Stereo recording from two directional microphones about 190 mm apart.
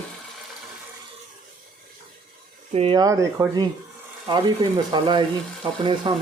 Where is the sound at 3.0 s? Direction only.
15° right (ahead or behind).